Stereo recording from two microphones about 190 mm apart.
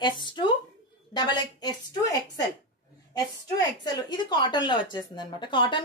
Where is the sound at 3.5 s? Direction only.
20° left (ahead or behind).